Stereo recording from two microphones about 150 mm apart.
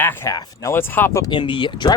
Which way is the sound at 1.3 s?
35° left (ahead or behind).